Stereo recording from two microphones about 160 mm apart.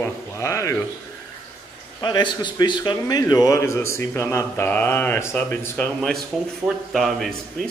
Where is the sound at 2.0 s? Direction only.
25° left (ahead or behind); by 5.9 s 10° left (ahead or behind).